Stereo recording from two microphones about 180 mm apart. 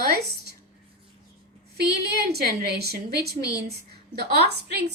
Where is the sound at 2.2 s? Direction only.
55° right (ahead or behind).